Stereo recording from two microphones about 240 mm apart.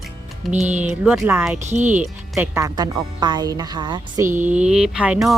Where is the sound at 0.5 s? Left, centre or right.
Right.